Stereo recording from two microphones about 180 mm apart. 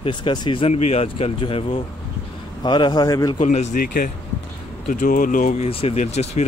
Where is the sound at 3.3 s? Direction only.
40° left (ahead or behind).